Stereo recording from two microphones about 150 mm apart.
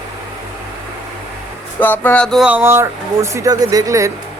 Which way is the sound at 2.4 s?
15° right (ahead or behind).